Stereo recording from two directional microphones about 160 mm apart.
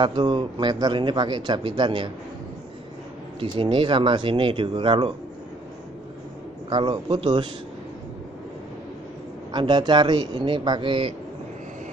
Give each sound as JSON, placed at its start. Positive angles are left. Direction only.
{"t": 0.0, "sound": "speech", "side_deg": -30}
{"t": 3.3, "sound": "speech", "side_deg": -30}
{"t": 6.7, "sound": "speech", "side_deg": -30}
{"t": 9.5, "sound": "speech", "side_deg": -30}